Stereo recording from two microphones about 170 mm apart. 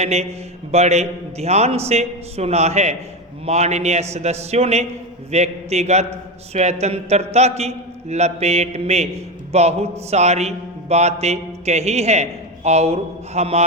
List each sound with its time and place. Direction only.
0.0 s a man's voice: 40° right (ahead or behind)